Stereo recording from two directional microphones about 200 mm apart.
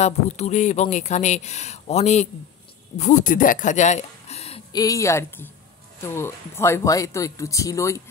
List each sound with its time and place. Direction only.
0.0 s speech: 35° left (ahead or behind)
4.7 s speech: 15° left (ahead or behind)